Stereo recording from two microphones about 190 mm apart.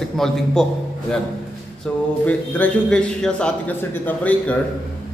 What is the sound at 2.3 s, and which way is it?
A man's voice, 10° left (ahead or behind).